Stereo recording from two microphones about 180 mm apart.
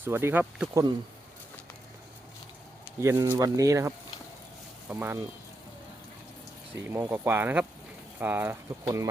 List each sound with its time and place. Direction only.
0.0 s speech: 15° right (ahead or behind)
3.0 s speech: 15° right (ahead or behind)
6.9 s speech: 10° right (ahead or behind)